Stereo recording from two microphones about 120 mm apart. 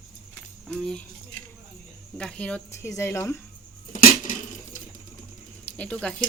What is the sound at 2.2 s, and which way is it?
Speech, 10° left (ahead or behind).